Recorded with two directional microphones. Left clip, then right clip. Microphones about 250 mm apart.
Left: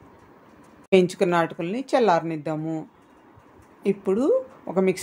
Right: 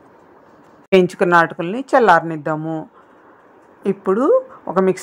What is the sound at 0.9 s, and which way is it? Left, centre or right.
A woman's voice, centre.